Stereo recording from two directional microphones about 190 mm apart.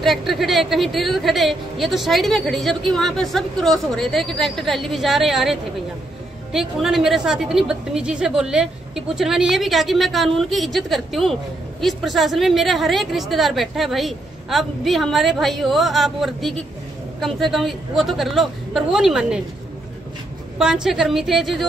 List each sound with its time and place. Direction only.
0.0 s speech: centre (ahead or behind)
20.5 s speech: 5° right (ahead or behind)